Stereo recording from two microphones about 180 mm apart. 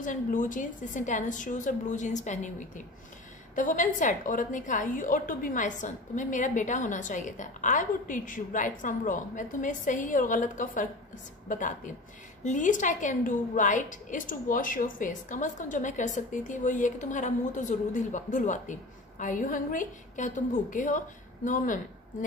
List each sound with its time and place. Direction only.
0.0 s a woman's voice: 45° left (ahead or behind)
3.5 s a woman's voice: 45° left (ahead or behind)